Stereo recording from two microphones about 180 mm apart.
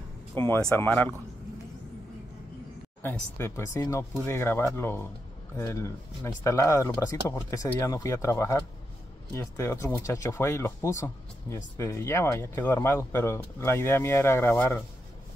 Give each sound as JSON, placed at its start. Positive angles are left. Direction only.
{"t": 0.3, "sound": "speech", "side_deg": 15}
{"t": 3.0, "sound": "speech", "side_deg": 10}